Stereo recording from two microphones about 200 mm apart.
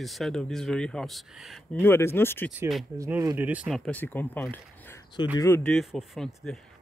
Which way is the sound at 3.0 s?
15° right (ahead or behind).